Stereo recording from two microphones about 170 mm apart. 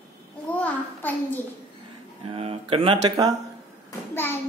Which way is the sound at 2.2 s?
35° right (ahead or behind).